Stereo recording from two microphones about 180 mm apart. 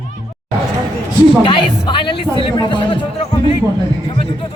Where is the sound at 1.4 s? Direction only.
25° left (ahead or behind).